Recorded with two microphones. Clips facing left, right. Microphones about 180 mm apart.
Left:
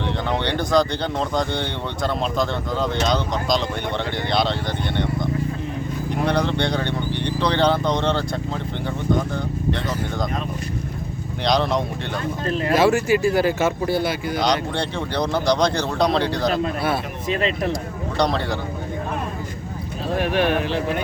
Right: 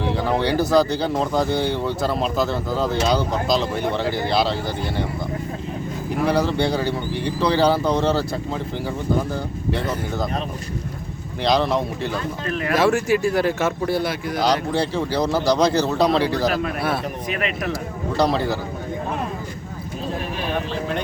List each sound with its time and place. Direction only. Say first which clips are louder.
0.0 s speech: right 3 dB; 5° right (ahead or behind)
6.2 s speech: right 2 dB; 5° right (ahead or behind)
11.4 s speech: right 1 dB; centre (ahead or behind)
12.5 s speech: left 2 dB; 30° left (ahead or behind)
12.7 s speech: left 1 dB; centre (ahead or behind)
17.2 s speech: left 6 dB; 30° left (ahead or behind)
18.2 s speech: right 2 dB; 5° right (ahead or behind)
20.1 s speech: left 8 dB; 70° left (ahead or behind)